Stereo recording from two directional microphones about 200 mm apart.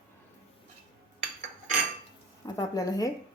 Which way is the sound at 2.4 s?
15° left (ahead or behind).